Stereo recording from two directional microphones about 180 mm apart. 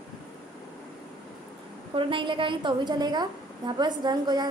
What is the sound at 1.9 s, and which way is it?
A woman's voice, 30° right (ahead or behind).